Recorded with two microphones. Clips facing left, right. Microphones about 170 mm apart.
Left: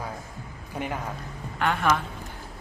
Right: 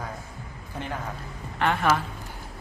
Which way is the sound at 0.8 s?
10° left (ahead or behind).